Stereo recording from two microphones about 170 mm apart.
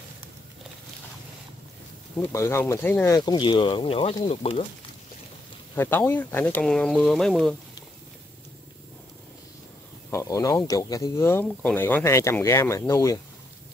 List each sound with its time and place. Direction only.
2.1 s speech: 15° left (ahead or behind)
3.2 s speech: 25° left (ahead or behind)
5.8 s speech: 10° left (ahead or behind)
10.1 s speech: 20° left (ahead or behind)